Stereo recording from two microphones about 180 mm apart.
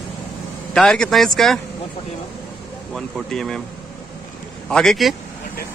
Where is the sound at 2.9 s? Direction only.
Centre (ahead or behind).